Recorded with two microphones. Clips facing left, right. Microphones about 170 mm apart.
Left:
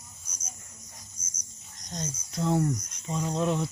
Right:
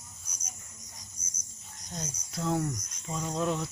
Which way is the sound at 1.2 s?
60° right (ahead or behind).